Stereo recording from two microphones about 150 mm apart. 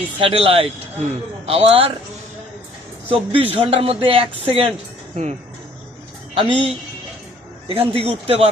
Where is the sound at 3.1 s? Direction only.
40° right (ahead or behind).